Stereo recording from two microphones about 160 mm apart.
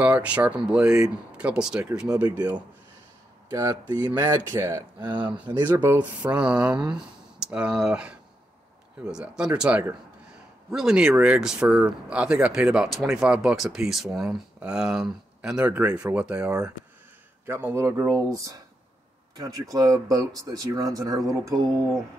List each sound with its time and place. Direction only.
0.0 s speech: 10° right (ahead or behind)
3.4 s speech: 25° right (ahead or behind)
5.0 s speech: 30° right (ahead or behind)
5.3 s speech: 10° right (ahead or behind)